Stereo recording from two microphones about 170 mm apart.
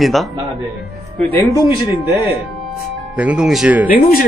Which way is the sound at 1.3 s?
15° left (ahead or behind).